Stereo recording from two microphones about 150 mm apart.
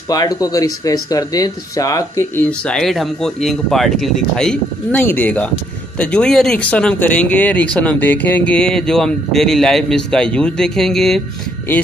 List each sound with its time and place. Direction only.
0.1 s speech: 25° left (ahead or behind); by 11.2 s centre (ahead or behind)